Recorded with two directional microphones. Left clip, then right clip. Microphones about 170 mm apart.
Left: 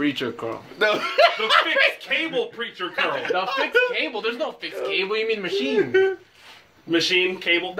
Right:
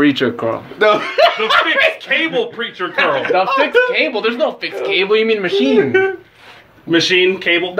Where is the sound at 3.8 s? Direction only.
30° right (ahead or behind).